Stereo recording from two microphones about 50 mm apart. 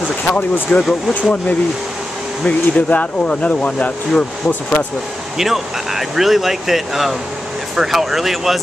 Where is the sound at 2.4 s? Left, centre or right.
Left.